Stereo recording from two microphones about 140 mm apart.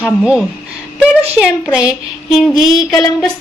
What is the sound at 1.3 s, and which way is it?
A woman's voice, 5° right (ahead or behind).